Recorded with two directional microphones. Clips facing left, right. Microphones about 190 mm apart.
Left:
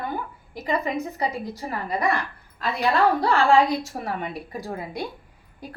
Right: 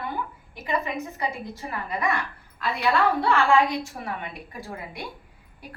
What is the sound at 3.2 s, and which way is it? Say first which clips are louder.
A woman's voice: left 2 dB; 40° left (ahead or behind).